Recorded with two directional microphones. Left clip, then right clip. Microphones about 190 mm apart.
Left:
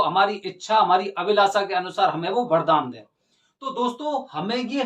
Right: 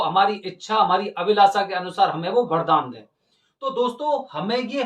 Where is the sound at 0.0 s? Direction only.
10° left (ahead or behind).